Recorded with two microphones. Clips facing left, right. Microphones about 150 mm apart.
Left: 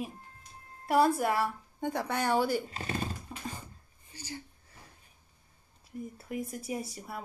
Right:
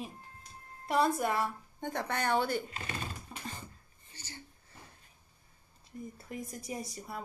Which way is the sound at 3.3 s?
5° left (ahead or behind).